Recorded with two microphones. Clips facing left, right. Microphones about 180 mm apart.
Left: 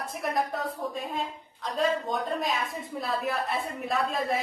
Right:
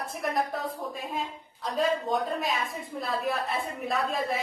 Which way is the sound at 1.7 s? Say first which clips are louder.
Right 1 dB; centre (ahead or behind).